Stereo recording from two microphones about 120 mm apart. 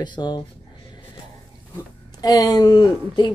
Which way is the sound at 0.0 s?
40° left (ahead or behind).